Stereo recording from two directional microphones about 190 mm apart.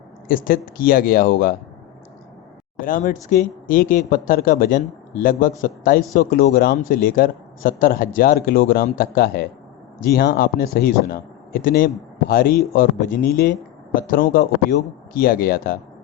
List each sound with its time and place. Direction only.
0.3 s speech: 50° left (ahead or behind)
2.8 s speech: 45° left (ahead or behind)